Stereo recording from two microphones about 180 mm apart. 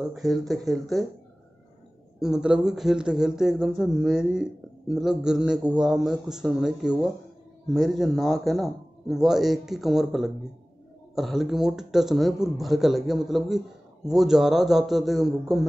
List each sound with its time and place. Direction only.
0.0 s speech: centre (ahead or behind)
2.1 s speech: 5° right (ahead or behind)